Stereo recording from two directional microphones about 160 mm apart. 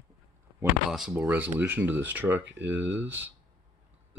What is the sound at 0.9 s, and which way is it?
Speech, 5° right (ahead or behind).